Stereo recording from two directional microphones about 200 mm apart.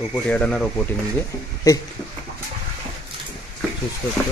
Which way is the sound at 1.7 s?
15° left (ahead or behind).